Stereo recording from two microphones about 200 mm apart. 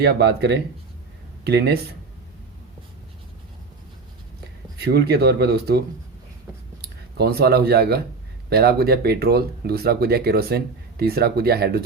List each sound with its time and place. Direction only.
0.0 s speech: 55° right (ahead or behind)
4.8 s speech: 55° right (ahead or behind)
7.2 s speech: 50° right (ahead or behind)